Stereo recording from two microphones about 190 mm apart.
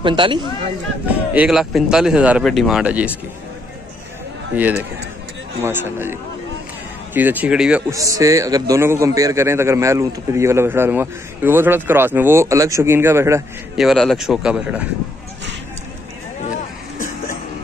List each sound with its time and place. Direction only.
0.0 s speech: 25° right (ahead or behind)
1.3 s speech: 5° right (ahead or behind)
4.6 s a man's voice: 10° right (ahead or behind)
7.2 s speech: 10° right (ahead or behind)
7.9 s a man's voice: 15° right (ahead or behind)
13.7 s speech: centre (ahead or behind)